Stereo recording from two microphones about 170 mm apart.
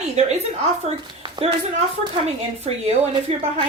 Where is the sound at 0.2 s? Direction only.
40° right (ahead or behind).